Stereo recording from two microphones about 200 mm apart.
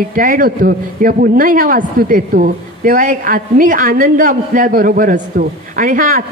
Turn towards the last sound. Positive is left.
turn(degrees=-40)  # may be behind; listen again after turning